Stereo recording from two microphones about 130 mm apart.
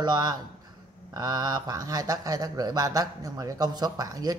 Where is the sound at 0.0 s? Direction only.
30° right (ahead or behind).